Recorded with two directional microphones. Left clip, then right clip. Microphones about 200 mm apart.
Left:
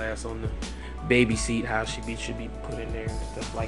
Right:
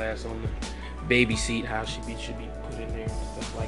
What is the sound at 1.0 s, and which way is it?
Speech, 25° left (ahead or behind).